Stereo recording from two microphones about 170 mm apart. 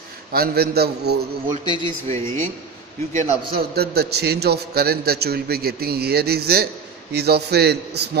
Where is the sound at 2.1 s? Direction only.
15° left (ahead or behind).